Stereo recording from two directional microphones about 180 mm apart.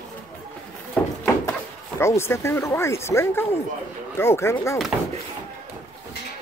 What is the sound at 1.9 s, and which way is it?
Speech, 15° left (ahead or behind).